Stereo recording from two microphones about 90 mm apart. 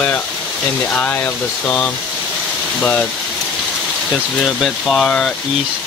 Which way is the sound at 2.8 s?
15° left (ahead or behind).